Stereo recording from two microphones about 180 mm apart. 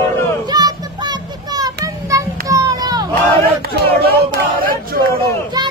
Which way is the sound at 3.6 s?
60° right (ahead or behind).